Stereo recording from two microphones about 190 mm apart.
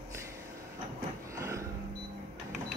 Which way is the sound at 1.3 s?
15° right (ahead or behind).